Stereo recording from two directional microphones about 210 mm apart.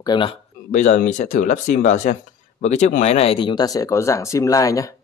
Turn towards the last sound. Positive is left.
turn(degrees=15)  # may be behind; listen again after turning